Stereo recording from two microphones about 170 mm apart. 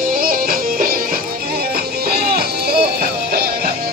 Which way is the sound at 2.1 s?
65° right (ahead or behind).